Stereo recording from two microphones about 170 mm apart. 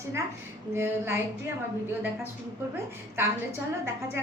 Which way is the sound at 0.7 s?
15° right (ahead or behind).